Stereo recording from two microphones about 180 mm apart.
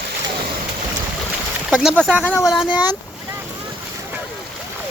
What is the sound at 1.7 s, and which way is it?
Speech, 5° right (ahead or behind).